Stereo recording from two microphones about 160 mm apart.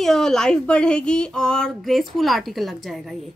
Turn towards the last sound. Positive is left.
turn(degrees=0)  # may be behind; listen again after turning